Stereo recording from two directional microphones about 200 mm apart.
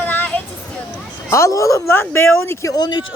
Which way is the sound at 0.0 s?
10° left (ahead or behind).